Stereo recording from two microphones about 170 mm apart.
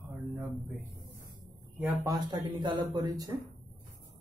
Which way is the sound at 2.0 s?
25° right (ahead or behind).